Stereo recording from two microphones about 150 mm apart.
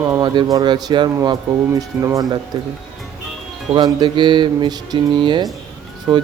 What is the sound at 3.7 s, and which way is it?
Speech, 30° right (ahead or behind).